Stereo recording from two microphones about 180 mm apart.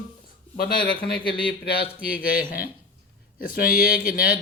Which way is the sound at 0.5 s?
60° left (ahead or behind).